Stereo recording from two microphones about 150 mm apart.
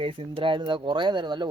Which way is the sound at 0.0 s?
35° right (ahead or behind).